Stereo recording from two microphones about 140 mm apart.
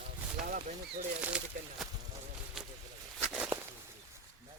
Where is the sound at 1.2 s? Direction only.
10° right (ahead or behind).